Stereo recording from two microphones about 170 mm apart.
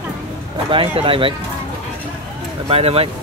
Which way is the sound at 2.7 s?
35° right (ahead or behind).